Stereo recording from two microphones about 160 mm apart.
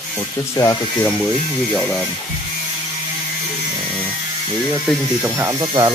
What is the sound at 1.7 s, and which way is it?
Speech, centre (ahead or behind).